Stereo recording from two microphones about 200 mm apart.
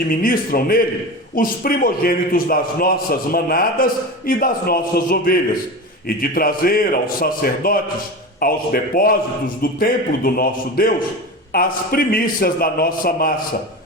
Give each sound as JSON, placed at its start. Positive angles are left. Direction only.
{"t": 0.2, "sound": "a man's voice", "side_deg": 45}